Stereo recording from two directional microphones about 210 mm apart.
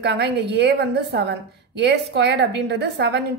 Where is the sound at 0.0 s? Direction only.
55° right (ahead or behind).